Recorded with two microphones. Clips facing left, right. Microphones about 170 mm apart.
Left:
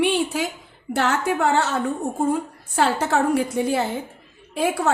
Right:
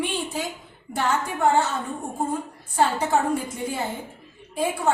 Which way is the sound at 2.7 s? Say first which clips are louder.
Left 1 dB; 85° left.